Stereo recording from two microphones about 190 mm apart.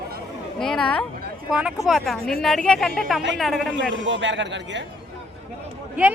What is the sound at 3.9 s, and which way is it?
Speech, 70° right (ahead or behind).